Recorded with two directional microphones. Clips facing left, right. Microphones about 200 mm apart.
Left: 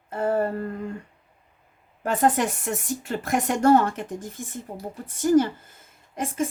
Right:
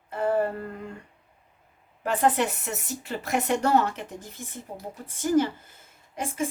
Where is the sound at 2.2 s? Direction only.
45° left (ahead or behind).